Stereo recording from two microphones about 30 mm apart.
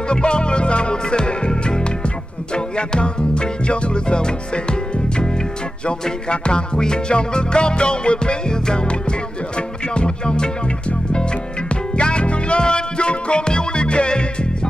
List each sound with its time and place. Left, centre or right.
0.1 s music: left
11.7 s music: left